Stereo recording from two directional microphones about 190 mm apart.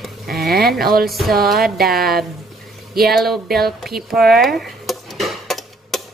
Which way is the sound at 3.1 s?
Centre (ahead or behind).